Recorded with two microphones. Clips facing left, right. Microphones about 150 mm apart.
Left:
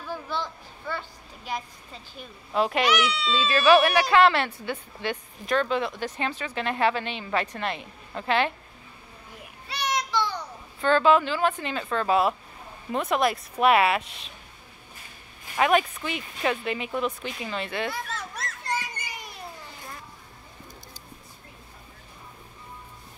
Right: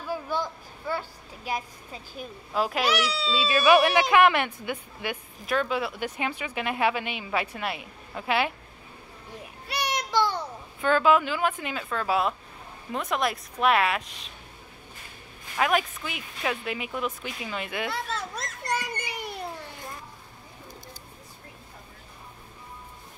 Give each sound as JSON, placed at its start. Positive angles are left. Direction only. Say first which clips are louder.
{"t": 0.1, "sound": "a sound", "louder": "right 2 dB", "side_deg": -10}
{"t": 2.9, "sound": "speech", "louder": "left 2 dB", "side_deg": -35}
{"t": 3.3, "sound": "speech", "louder": "left 1 dB", "side_deg": -10}
{"t": 9.7, "sound": "a sound", "louder": "left 1 dB", "side_deg": -70}
{"t": 10.8, "sound": "speech", "louder": "left 1 dB", "side_deg": -5}
{"t": 15.6, "sound": "speech", "louder": "left 3 dB", "side_deg": -5}
{"t": 18.7, "sound": "children playing", "louder": "right 2 dB", "side_deg": -65}